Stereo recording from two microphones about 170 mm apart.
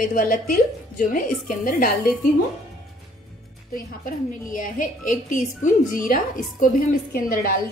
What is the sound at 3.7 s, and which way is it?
Speech, 55° left (ahead or behind).